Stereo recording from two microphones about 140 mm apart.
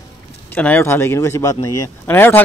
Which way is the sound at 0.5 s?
15° left (ahead or behind).